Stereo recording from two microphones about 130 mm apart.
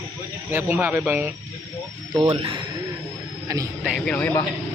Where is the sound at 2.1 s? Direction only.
45° right (ahead or behind).